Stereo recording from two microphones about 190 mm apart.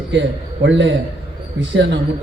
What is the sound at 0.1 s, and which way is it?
A man's voice, 70° right (ahead or behind).